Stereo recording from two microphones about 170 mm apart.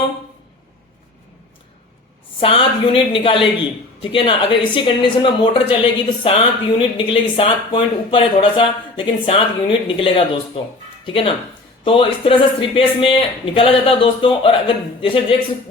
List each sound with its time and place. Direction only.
2.4 s speech: 30° left (ahead or behind)